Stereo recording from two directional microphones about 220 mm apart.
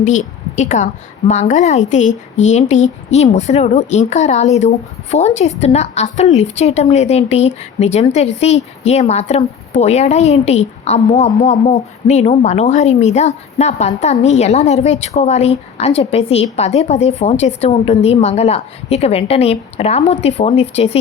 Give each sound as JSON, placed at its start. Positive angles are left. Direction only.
{"t": 0.0, "sound": "a woman's voice", "side_deg": 35}